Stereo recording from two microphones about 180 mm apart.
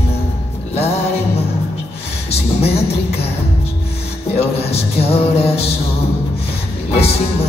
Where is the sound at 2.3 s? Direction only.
35° left (ahead or behind).